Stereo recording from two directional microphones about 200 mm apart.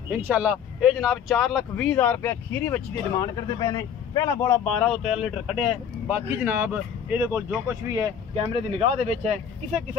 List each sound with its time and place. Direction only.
0.1 s speech: 10° right (ahead or behind); by 4.6 s 15° left (ahead or behind)
4.6 s speech: 5° left (ahead or behind)
8.5 s speech: 30° right (ahead or behind)